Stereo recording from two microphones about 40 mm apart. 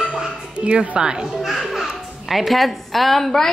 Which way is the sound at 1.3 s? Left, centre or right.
Centre.